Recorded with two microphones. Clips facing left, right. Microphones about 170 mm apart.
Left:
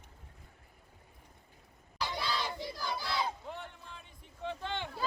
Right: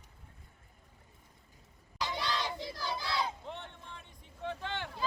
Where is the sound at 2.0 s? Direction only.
5° left (ahead or behind).